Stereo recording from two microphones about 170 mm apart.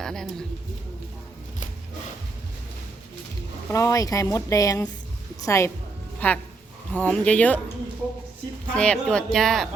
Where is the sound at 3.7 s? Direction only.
15° left (ahead or behind).